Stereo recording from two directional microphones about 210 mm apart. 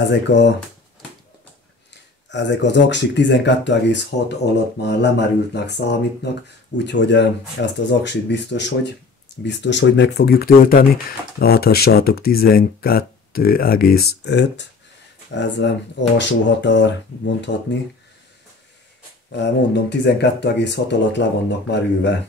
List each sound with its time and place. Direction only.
0.3 s speech: 55° left (ahead or behind)
2.3 s speech: 55° left (ahead or behind)
4.4 s speech: 30° left (ahead or behind)
4.8 s speech: 55° left (ahead or behind)
19.3 s speech: 55° left (ahead or behind)